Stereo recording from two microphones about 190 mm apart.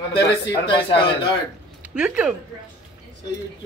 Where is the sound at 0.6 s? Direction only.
25° left (ahead or behind).